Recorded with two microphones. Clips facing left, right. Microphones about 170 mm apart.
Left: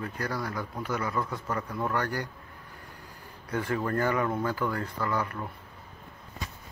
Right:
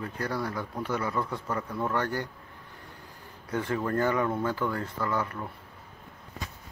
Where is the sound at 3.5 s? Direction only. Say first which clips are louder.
Even; 20° right (ahead or behind).